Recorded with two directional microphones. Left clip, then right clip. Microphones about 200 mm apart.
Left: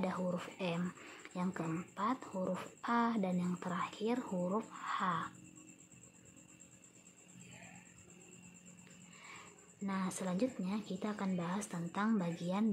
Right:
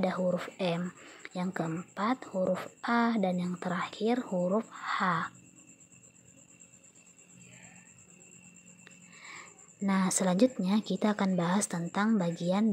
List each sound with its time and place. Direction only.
0.0 s speech: 20° right (ahead or behind)
0.8 s speech: 5° right (ahead or behind)
1.2 s speech: 20° right (ahead or behind)
9.8 s a woman's voice: 35° right (ahead or behind)